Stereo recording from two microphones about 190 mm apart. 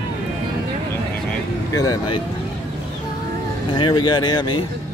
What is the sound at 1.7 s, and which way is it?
Speech, 20° left (ahead or behind).